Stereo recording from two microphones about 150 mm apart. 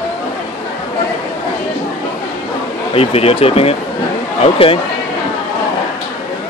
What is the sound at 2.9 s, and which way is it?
Speech, 40° left (ahead or behind).